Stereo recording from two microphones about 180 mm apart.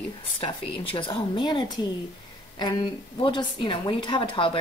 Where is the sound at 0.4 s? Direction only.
30° left (ahead or behind).